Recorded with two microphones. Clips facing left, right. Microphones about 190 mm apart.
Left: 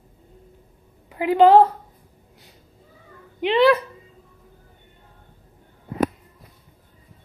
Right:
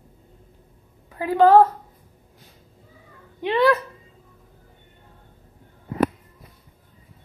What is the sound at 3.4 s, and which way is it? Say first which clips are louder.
Speech: left 2 dB; 20° left (ahead or behind).